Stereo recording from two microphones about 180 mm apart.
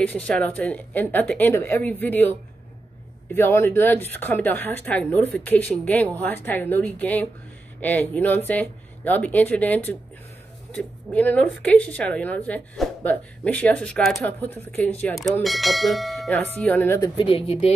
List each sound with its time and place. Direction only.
0.0 s a woman's voice: 5° left (ahead or behind)
3.3 s a woman's voice: 10° left (ahead or behind)
17.2 s speech: 30° left (ahead or behind)